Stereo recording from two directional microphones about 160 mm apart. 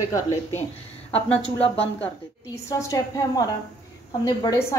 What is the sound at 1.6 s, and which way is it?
Speech, 40° left (ahead or behind).